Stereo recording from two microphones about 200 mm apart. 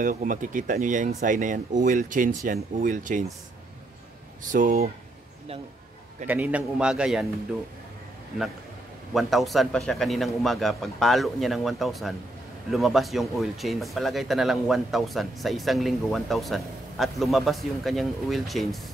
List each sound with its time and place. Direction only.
0.0 s speech: 40° right (ahead or behind)
4.5 s speech: 40° right (ahead or behind)
6.2 s speech: 10° right (ahead or behind)
9.1 s speech: centre (ahead or behind)